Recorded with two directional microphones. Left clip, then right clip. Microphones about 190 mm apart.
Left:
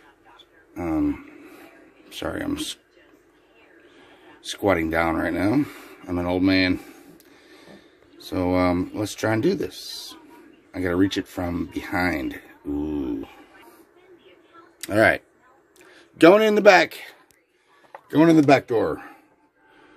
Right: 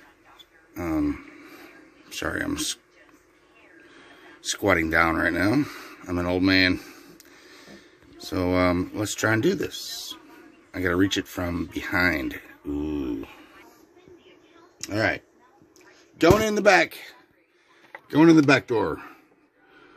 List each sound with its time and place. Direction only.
0.7 s a sound: 5° left (ahead or behind)
2.0 s speech: centre (ahead or behind)
3.9 s speech: centre (ahead or behind)
14.8 s a man's voice: 45° left (ahead or behind); by 17.2 s 10° left (ahead or behind)
18.1 s speech: 10° right (ahead or behind)